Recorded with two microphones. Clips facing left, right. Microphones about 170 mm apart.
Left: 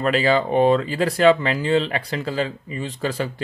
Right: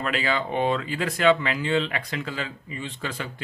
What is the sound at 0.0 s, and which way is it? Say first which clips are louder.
Speech: left 8 dB; 35° left (ahead or behind).